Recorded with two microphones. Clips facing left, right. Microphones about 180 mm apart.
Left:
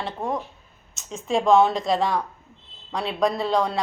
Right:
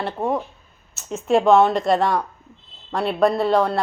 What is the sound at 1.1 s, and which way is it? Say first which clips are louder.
A woman's voice: right 3 dB; 5° right (ahead or behind).